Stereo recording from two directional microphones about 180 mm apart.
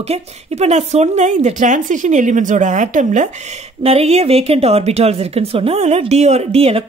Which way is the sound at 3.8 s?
35° right (ahead or behind).